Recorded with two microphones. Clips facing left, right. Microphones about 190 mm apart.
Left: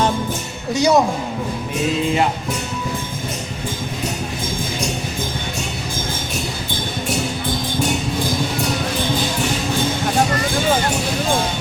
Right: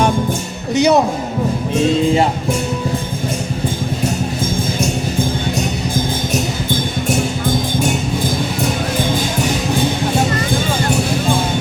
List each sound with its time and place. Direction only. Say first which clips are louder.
0.7 s speech: right 3 dB; 20° right (ahead or behind)